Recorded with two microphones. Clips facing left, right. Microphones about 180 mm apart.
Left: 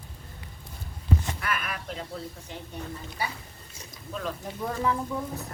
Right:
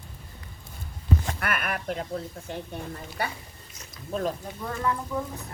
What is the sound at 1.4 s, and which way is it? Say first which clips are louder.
Speech: right 2 dB; 55° right (ahead or behind).